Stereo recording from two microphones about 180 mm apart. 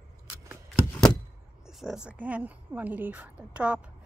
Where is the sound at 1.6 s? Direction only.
5° right (ahead or behind).